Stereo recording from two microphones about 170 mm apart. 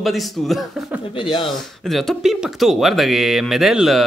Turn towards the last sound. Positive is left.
turn(degrees=0)  # may be behind; listen again after turning